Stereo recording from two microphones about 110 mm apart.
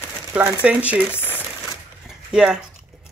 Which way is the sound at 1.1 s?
20° left (ahead or behind).